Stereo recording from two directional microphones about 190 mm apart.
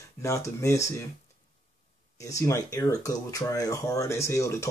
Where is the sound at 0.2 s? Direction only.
15° left (ahead or behind).